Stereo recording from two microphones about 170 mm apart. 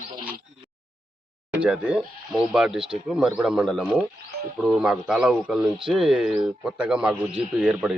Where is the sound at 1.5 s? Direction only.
5° right (ahead or behind).